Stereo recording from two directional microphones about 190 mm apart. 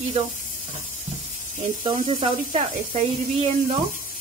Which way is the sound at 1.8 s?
30° right (ahead or behind).